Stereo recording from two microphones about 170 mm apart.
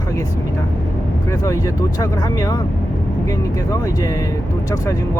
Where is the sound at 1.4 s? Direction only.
20° left (ahead or behind).